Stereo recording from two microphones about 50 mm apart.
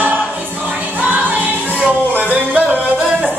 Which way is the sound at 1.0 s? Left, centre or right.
Right.